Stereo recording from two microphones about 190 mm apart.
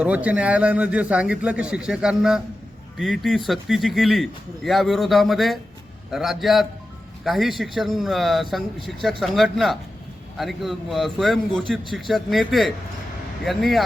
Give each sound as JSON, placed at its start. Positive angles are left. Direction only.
{"t": 0.0, "sound": "a man's voice", "side_deg": -5}